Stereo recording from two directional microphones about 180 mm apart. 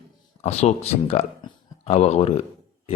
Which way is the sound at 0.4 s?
35° left (ahead or behind).